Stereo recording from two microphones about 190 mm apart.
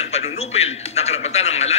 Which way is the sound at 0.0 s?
35° left (ahead or behind).